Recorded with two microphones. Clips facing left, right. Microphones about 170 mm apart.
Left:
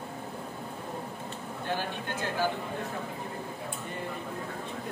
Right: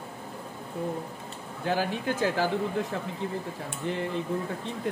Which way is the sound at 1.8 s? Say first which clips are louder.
Right 7 dB; 90° right.